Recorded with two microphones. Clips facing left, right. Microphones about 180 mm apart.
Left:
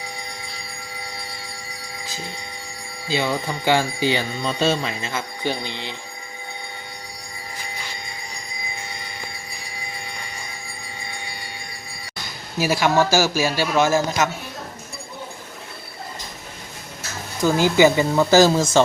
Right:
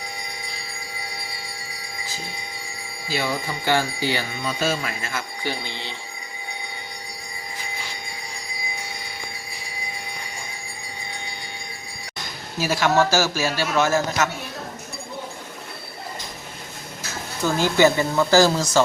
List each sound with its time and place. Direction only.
3.1 s a man's voice: 15° left (ahead or behind)
4.6 s jingle bell: 25° left (ahead or behind)
12.5 s a man's voice: 10° left (ahead or behind)
17.4 s a man's voice: 15° left (ahead or behind)